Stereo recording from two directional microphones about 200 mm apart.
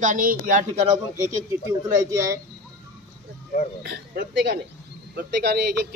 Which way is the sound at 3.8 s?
55° right (ahead or behind).